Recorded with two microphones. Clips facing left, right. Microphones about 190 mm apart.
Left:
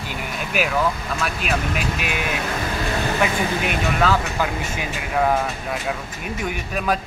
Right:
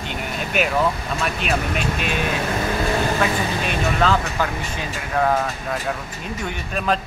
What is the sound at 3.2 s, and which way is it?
Speech, 15° left (ahead or behind).